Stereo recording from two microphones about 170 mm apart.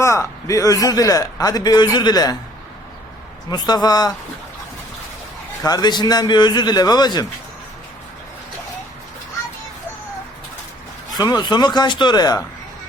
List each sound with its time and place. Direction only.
0.0 s a man's voice: 15° left (ahead or behind)
3.5 s a man's voice: 25° left (ahead or behind)
5.6 s a man's voice: 25° left (ahead or behind)
11.1 s a man's voice: 25° left (ahead or behind)